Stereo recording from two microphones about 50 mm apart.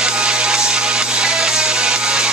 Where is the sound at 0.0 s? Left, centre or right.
Centre.